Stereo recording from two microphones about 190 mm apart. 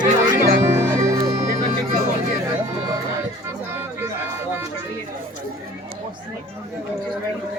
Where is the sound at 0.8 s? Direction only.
15° right (ahead or behind).